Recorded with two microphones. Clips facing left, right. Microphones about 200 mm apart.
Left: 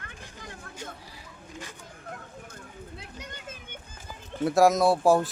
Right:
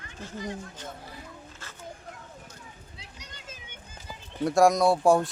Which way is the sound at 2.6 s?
55° left (ahead or behind).